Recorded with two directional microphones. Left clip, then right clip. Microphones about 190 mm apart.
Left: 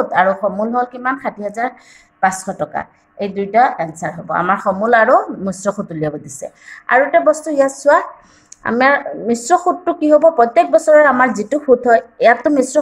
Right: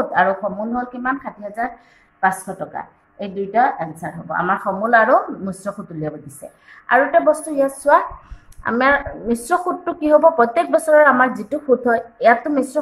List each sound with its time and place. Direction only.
0.0 s a woman's voice: 45° left (ahead or behind)